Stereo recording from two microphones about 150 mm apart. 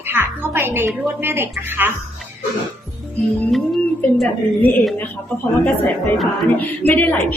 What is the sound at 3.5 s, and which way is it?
Speech, centre (ahead or behind).